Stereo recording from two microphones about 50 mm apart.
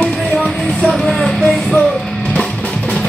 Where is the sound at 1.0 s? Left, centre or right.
Centre.